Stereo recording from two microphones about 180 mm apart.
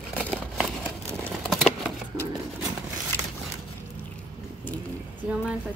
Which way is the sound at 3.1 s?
10° left (ahead or behind).